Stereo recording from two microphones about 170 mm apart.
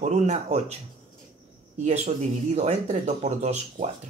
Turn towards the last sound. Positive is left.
turn(degrees=-40)  # may be behind; listen again after turning